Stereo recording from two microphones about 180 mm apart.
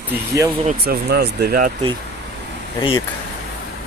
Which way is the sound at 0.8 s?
60° right (ahead or behind).